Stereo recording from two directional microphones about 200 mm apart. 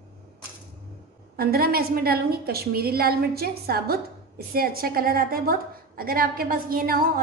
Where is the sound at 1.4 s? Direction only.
50° right (ahead or behind).